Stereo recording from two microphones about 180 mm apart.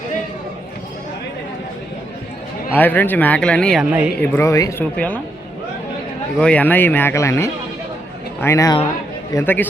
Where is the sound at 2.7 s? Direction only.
10° left (ahead or behind).